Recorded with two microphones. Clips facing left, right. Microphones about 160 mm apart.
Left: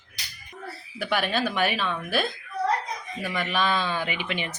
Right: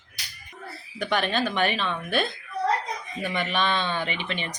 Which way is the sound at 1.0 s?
5° left (ahead or behind).